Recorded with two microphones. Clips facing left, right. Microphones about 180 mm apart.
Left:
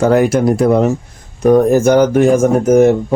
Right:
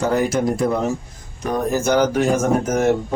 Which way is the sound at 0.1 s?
70° left (ahead or behind).